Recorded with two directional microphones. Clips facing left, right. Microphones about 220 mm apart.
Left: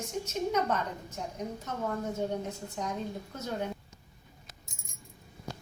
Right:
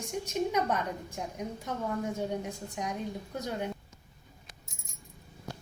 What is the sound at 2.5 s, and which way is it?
Speech, 15° right (ahead or behind).